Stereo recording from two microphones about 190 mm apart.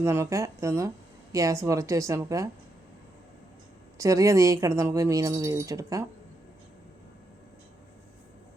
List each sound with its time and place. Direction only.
0.0 s speech: 15° right (ahead or behind)
3.9 s speech: 15° right (ahead or behind)